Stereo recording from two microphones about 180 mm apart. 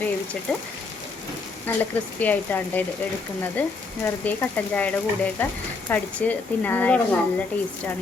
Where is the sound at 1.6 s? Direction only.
10° left (ahead or behind).